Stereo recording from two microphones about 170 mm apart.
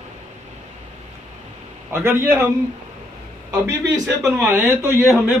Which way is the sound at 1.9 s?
10° right (ahead or behind).